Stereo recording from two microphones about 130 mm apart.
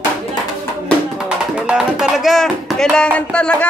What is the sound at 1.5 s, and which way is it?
Speech, 5° right (ahead or behind).